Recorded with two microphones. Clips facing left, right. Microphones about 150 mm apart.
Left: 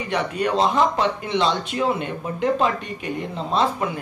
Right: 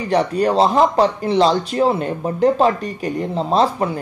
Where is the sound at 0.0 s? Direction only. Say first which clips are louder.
Right 6 dB; 35° right (ahead or behind).